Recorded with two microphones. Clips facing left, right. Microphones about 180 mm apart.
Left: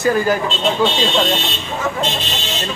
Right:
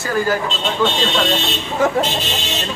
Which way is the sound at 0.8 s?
10° left (ahead or behind).